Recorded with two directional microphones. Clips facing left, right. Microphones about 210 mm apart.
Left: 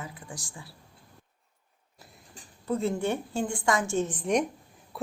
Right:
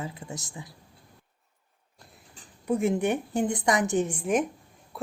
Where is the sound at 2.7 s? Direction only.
15° right (ahead or behind).